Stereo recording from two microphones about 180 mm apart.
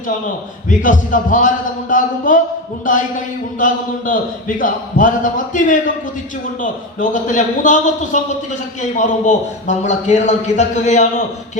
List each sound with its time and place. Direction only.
0.7 s speech: 45° left (ahead or behind)
3.6 s speech: 45° left (ahead or behind)